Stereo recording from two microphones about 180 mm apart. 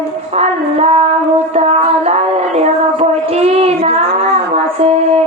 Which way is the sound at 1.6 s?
35° right (ahead or behind).